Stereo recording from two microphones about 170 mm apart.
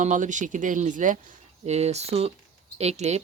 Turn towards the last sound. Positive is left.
turn(degrees=-40)  # may be behind; listen again after turning